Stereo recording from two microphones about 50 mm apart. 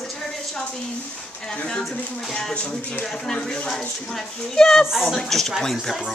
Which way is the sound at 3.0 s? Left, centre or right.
Centre.